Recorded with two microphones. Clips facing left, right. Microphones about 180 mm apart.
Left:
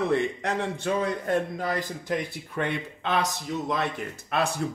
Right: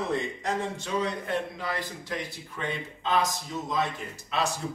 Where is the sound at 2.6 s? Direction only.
65° left (ahead or behind).